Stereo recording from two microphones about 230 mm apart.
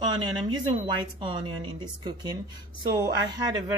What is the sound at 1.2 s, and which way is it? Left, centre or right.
Speech, right.